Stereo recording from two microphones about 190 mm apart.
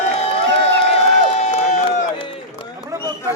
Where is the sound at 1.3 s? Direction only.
40° left (ahead or behind).